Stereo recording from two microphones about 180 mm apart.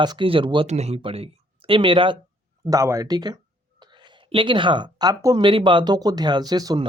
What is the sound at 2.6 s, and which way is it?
Speech, 20° right (ahead or behind).